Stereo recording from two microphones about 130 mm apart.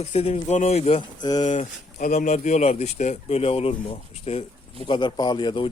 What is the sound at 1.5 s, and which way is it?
Speech, 70° left (ahead or behind).